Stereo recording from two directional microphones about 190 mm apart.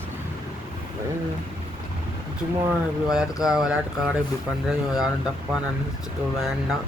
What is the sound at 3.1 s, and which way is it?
Speech, 5° right (ahead or behind).